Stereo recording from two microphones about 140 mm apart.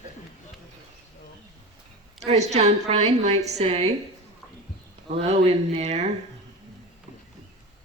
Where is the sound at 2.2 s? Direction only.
50° right (ahead or behind).